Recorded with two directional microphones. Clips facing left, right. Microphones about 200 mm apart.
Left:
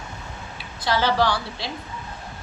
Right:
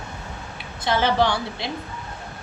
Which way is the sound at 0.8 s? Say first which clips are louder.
Right 1 dB; 20° right (ahead or behind).